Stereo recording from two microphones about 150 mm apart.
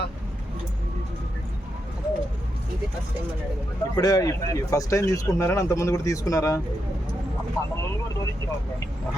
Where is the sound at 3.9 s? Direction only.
25° left (ahead or behind).